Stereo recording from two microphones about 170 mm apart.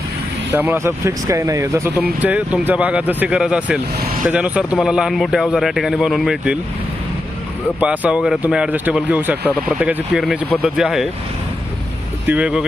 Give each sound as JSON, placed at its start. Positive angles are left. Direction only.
{"t": 0.5, "sound": "a man's voice", "side_deg": -10}
{"t": 7.8, "sound": "a man's voice", "side_deg": -5}
{"t": 12.2, "sound": "speech", "side_deg": -10}